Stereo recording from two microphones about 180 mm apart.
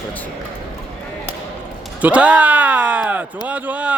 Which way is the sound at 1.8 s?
5° right (ahead or behind).